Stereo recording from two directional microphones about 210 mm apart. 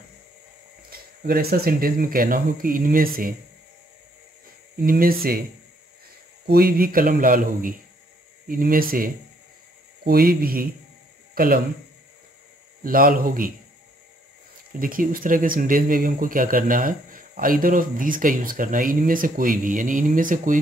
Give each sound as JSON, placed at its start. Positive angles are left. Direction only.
{"t": 0.8, "sound": "speech", "side_deg": -45}
{"t": 4.8, "sound": "speech", "side_deg": -45}
{"t": 6.4, "sound": "a man's voice", "side_deg": -45}
{"t": 12.8, "sound": "speech", "side_deg": -45}
{"t": 14.8, "sound": "speech", "side_deg": -40}